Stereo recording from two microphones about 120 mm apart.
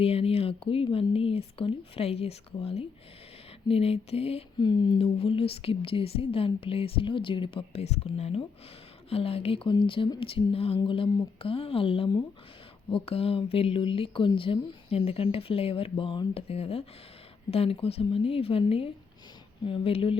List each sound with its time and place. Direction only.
0.0 s speech: 55° left (ahead or behind)
3.7 s a sound: 55° left (ahead or behind)
4.5 s speech: 40° left (ahead or behind)